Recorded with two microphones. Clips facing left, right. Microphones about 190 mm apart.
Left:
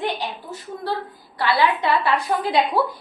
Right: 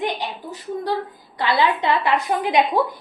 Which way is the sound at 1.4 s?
20° right (ahead or behind).